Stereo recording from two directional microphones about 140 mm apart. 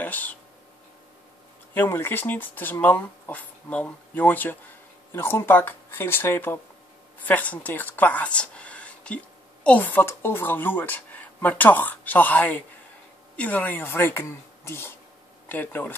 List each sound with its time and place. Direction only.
0.0 s speech: 10° left (ahead or behind)
1.7 s speech: 15° left (ahead or behind)